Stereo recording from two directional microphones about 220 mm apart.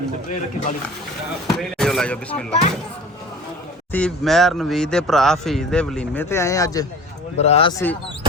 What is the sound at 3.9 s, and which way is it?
A man's voice, 5° left (ahead or behind).